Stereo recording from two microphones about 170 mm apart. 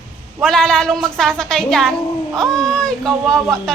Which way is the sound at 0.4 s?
5° left (ahead or behind).